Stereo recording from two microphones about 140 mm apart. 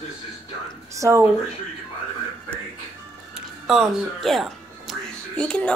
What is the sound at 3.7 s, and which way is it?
Speech, centre (ahead or behind).